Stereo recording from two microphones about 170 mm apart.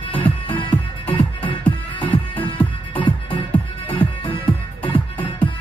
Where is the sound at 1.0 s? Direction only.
30° left (ahead or behind).